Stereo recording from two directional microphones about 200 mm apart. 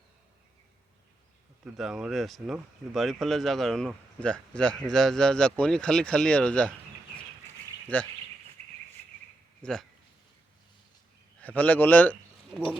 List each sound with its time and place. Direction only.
1.7 s speech: centre (ahead or behind)
7.9 s a man's voice: 5° left (ahead or behind)
8.6 s cricket: 35° right (ahead or behind)
9.6 s speech: 5° left (ahead or behind)
11.3 s a man's voice: 10° left (ahead or behind)